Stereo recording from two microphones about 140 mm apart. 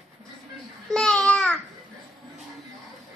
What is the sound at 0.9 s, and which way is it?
Babbling, 5° left (ahead or behind).